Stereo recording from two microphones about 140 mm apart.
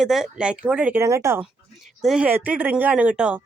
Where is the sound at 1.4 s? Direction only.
Centre (ahead or behind).